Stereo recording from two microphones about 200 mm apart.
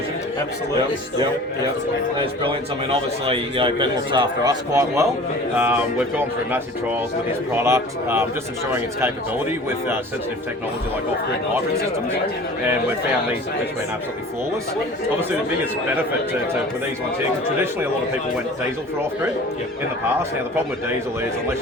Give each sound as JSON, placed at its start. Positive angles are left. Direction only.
{"t": 2.4, "sound": "a man's voice", "side_deg": -25}